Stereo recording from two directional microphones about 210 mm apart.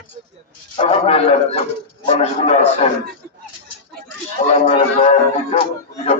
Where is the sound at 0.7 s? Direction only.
30° left (ahead or behind).